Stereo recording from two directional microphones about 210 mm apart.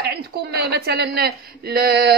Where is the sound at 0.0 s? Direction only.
50° right (ahead or behind).